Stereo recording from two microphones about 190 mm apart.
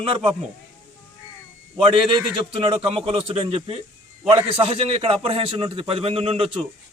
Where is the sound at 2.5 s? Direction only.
30° right (ahead or behind).